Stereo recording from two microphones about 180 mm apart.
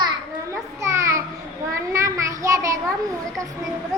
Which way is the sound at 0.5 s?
15° right (ahead or behind).